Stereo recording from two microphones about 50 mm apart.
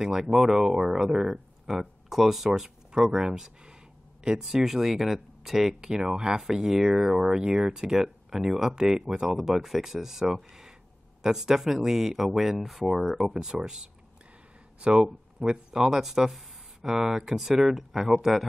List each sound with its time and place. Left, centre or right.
0.0 s speech: centre